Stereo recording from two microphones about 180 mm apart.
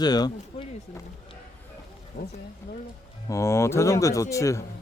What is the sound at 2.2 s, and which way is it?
Speech, 50° left (ahead or behind).